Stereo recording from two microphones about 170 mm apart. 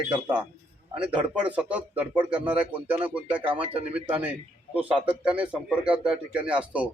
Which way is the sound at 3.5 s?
35° right (ahead or behind).